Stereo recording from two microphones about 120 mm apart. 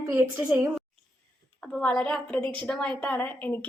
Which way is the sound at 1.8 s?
10° left (ahead or behind).